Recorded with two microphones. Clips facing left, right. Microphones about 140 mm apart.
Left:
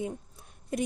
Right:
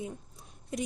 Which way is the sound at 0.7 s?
50° left (ahead or behind).